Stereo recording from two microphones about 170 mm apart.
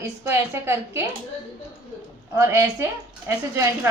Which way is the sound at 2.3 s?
15° right (ahead or behind).